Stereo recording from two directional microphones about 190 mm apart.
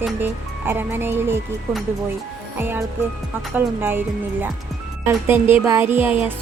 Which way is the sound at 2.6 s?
10° right (ahead or behind).